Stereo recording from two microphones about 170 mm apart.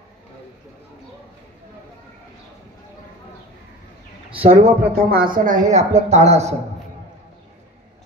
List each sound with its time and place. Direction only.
4.3 s speech: 35° right (ahead or behind)
4.9 s speech: 60° right (ahead or behind); by 6.5 s 40° right (ahead or behind)